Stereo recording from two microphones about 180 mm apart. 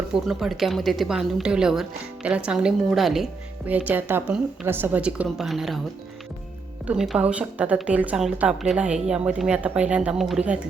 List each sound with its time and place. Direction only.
0.1 s a woman's voice: centre (ahead or behind)
6.8 s a woman's voice: 5° right (ahead or behind)